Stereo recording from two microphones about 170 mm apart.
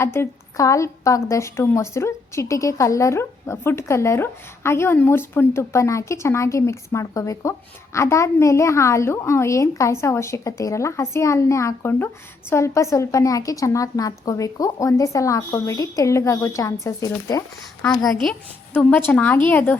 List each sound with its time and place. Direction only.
0.0 s a woman's voice: 15° left (ahead or behind)
18.0 s a woman's voice: centre (ahead or behind)